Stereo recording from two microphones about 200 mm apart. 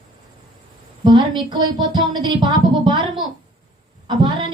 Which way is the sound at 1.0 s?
25° right (ahead or behind).